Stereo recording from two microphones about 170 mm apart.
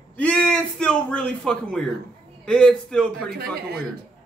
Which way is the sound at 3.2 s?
65° right (ahead or behind).